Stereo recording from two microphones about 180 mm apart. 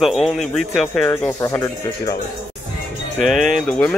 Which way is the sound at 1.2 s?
15° left (ahead or behind).